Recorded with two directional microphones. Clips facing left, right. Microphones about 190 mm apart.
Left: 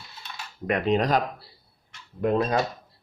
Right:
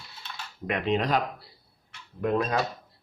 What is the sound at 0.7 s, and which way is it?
Speech, 45° left (ahead or behind).